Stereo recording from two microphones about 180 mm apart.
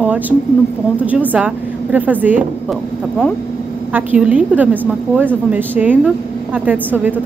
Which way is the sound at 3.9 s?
10° right (ahead or behind).